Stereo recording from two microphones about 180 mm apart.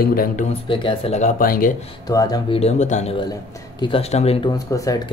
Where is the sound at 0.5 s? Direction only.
30° left (ahead or behind).